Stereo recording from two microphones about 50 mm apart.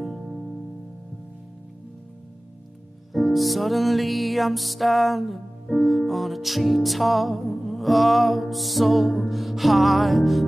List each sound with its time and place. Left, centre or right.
0.0 s music: centre
3.1 s music: centre